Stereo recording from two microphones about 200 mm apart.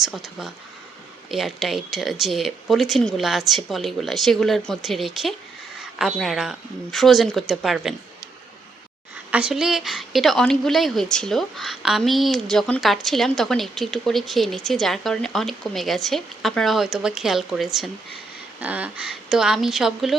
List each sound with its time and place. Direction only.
0.0 s a woman's voice: centre (ahead or behind)
9.3 s a woman's voice: 5° right (ahead or behind)